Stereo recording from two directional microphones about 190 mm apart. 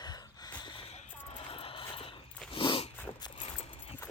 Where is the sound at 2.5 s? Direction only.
25° left (ahead or behind).